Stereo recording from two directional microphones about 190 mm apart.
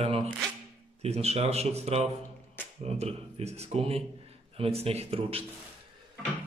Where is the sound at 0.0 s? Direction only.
30° right (ahead or behind).